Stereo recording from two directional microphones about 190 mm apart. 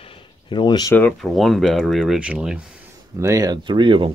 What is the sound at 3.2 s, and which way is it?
Speech, 15° right (ahead or behind).